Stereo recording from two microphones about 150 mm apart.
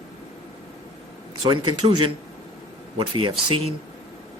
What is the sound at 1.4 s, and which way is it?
Speech, 30° right (ahead or behind).